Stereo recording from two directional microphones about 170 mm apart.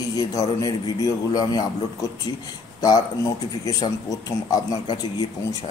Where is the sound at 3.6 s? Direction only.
20° left (ahead or behind).